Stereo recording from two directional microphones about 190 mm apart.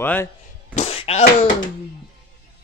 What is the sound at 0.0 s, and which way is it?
Speech, 10° left (ahead or behind).